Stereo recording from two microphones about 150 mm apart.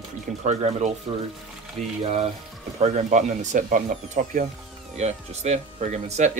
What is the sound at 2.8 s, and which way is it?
Speech, 50° right (ahead or behind).